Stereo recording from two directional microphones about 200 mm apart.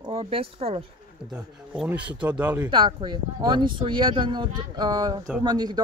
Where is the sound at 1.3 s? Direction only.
5° right (ahead or behind).